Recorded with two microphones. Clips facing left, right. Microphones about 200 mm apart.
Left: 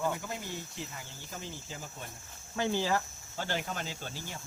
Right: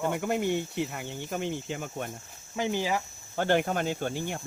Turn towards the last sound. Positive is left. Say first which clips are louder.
# right 11 dB
turn(degrees=-60)  # may be behind; listen again after turning